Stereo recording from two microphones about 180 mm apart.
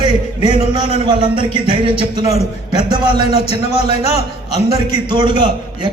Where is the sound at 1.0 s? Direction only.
25° right (ahead or behind).